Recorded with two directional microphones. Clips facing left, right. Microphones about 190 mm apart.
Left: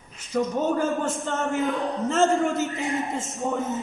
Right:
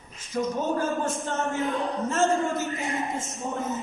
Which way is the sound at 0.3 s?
75° left (ahead or behind).